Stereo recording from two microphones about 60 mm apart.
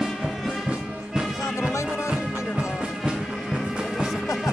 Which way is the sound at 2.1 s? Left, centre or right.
Centre.